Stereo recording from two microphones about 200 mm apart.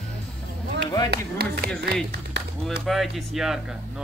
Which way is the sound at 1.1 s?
55° right (ahead or behind).